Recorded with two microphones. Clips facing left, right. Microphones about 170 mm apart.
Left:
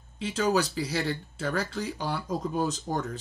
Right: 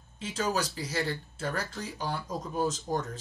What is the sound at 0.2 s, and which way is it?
Speech, 65° left (ahead or behind).